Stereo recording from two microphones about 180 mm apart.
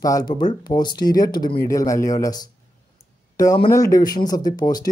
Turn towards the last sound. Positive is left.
turn(degrees=20)  # may be behind; listen again after turning